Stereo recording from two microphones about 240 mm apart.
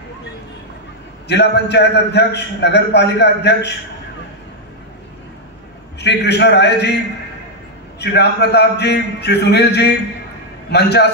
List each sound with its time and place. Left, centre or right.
1.2 s a man's voice: left
5.9 s a man's voice: left
8.0 s a man's voice: left